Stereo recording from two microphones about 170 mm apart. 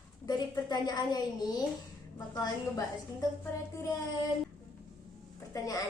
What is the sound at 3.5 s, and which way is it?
Speech, 15° left (ahead or behind).